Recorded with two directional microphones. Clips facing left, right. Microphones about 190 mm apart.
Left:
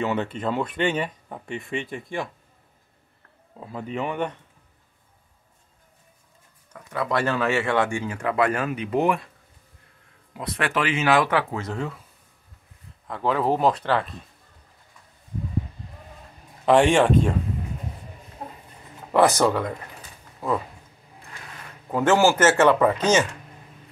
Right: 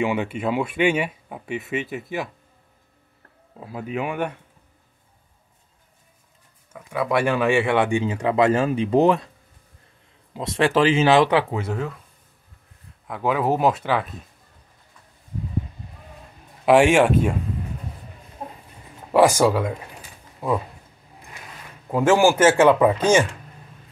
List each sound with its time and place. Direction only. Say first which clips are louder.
0.0 s speech: right 2 dB; 10° right (ahead or behind)
3.5 s speech: right 2 dB; 5° right (ahead or behind)
6.7 s speech: right 3 dB; 10° right (ahead or behind); by 9.1 s 30° right (ahead or behind)
10.3 s speech: right 6 dB; 25° right (ahead or behind); by 12.0 s 5° right (ahead or behind)
13.0 s speech: right 1 dB; 5° right (ahead or behind)
16.6 s speech: right 2 dB; 10° right (ahead or behind)
19.1 s speech: right 2 dB; 10° right (ahead or behind)
21.9 s speech: right 2 dB; 10° right (ahead or behind)